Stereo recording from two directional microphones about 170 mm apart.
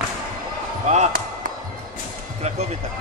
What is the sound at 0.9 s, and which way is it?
Basketball bounce, 40° right (ahead or behind).